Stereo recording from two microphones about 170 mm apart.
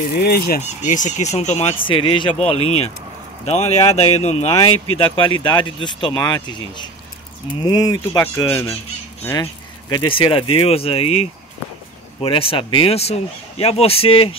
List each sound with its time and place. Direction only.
0.1 s speech: 65° left (ahead or behind)
0.6 s speech: 45° left (ahead or behind); by 8.6 s 20° left (ahead or behind)
9.2 s goose: 15° left (ahead or behind)
9.9 s speech: 30° left (ahead or behind)